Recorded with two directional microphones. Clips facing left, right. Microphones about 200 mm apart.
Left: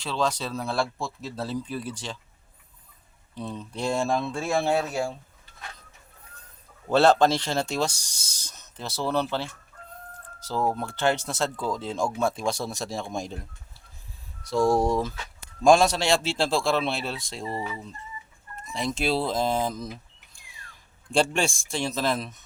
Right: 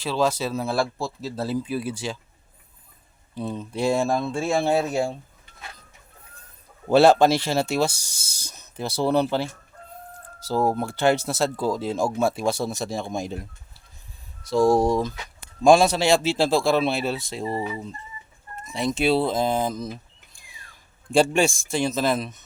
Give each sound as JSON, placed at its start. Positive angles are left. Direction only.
{"t": 0.0, "sound": "speech", "side_deg": -5}
{"t": 3.3, "sound": "speech", "side_deg": -5}
{"t": 4.7, "sound": "speech", "side_deg": -20}
{"t": 6.9, "sound": "speech", "side_deg": -10}
{"t": 18.9, "sound": "speech", "side_deg": 0}
{"t": 21.1, "sound": "speech", "side_deg": -5}